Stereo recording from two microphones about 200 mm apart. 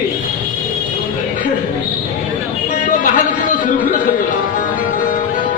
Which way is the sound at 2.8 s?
40° left (ahead or behind).